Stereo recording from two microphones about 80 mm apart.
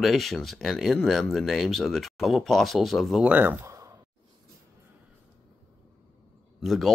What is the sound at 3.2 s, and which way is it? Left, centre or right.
Speech, centre.